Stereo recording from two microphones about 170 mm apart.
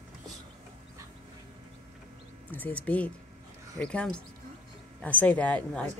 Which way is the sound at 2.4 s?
10° left (ahead or behind).